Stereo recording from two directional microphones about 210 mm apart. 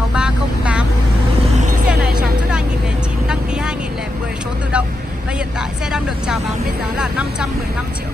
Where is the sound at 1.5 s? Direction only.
35° right (ahead or behind).